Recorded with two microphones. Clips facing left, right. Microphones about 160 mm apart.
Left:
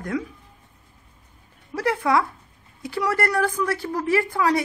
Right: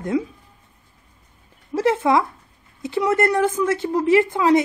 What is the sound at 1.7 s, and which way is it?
Speech, 25° right (ahead or behind).